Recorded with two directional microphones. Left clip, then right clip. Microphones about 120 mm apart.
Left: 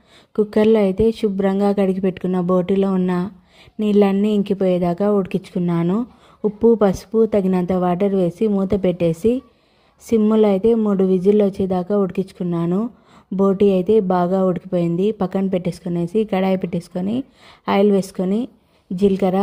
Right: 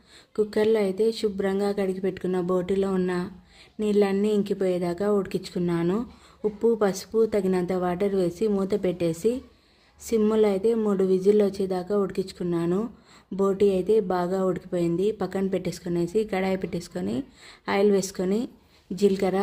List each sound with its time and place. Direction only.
0.3 s a woman's voice: 50° left (ahead or behind)
5.8 s speech: 30° left (ahead or behind)
6.6 s a woman's voice: 45° left (ahead or behind)